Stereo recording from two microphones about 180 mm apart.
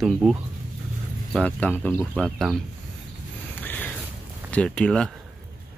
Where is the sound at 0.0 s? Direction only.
Centre (ahead or behind).